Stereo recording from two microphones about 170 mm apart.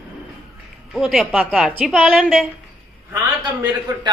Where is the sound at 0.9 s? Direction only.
5° left (ahead or behind).